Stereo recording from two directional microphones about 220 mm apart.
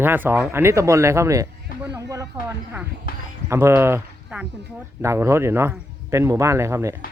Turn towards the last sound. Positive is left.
turn(degrees=-10)  # may be behind; listen again after turning